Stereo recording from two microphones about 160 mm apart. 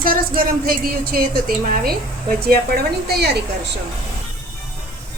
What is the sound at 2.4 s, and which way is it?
Speech, 75° right (ahead or behind).